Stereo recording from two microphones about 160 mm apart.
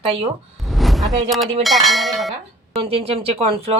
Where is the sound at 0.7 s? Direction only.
Centre (ahead or behind).